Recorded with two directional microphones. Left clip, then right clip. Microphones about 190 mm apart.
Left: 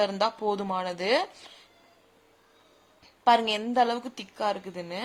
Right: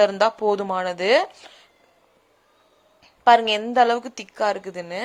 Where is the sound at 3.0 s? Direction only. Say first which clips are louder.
Right 7 dB; 20° right (ahead or behind).